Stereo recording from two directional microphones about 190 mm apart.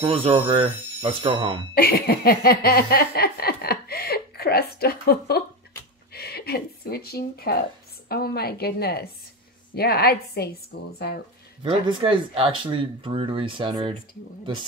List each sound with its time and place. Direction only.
0.0 s speech: 30° right (ahead or behind)
1.8 s a sound: 55° left (ahead or behind)
6.1 s a woman's voice: 55° left (ahead or behind)
11.6 s speech: 25° right (ahead or behind)